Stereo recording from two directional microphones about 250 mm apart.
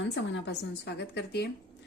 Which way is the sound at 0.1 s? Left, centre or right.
Left.